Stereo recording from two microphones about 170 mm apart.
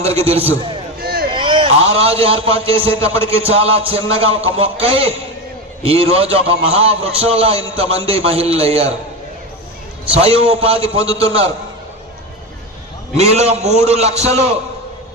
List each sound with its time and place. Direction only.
0.0 s a man's voice: 35° right (ahead or behind)
1.0 s a sound: 65° right (ahead or behind)
1.3 s a man's voice: 30° right (ahead or behind)
10.2 s a man's voice: 35° right (ahead or behind)
13.1 s a man's voice: 40° right (ahead or behind)